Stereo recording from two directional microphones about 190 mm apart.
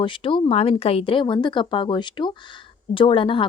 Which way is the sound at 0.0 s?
25° left (ahead or behind).